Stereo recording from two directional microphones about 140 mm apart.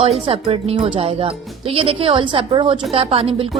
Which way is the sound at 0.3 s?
45° right (ahead or behind).